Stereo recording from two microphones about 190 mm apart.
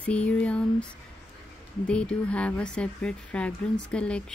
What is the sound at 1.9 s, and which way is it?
Speech, 5° left (ahead or behind).